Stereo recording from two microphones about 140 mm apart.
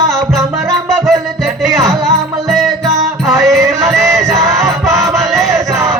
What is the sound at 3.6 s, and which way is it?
Music, 25° right (ahead or behind).